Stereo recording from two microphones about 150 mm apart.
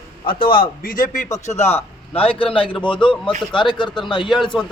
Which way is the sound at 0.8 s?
65° left (ahead or behind).